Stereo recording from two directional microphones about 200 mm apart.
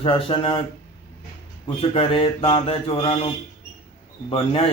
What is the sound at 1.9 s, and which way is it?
Speech, 25° left (ahead or behind).